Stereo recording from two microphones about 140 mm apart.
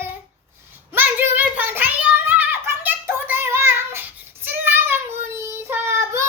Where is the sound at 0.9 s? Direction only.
15° right (ahead or behind).